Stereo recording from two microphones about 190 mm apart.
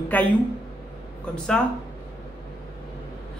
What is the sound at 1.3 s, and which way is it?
Speech, 5° left (ahead or behind).